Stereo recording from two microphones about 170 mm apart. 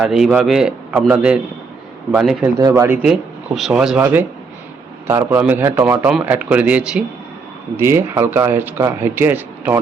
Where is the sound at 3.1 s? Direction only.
Centre (ahead or behind).